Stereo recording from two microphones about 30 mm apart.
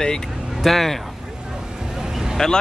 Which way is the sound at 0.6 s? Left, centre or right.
Centre.